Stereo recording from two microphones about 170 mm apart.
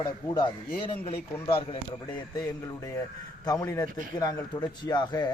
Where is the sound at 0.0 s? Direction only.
25° left (ahead or behind).